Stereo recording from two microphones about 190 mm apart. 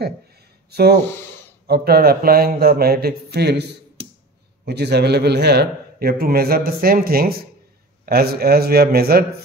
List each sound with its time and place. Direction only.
0.7 s a man's voice: 60° right (ahead or behind)
4.6 s a man's voice: 60° right (ahead or behind)